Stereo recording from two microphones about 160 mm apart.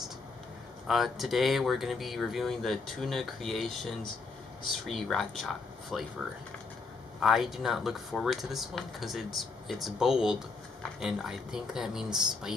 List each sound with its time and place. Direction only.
0.8 s speech: centre (ahead or behind)
7.2 s speech: centre (ahead or behind)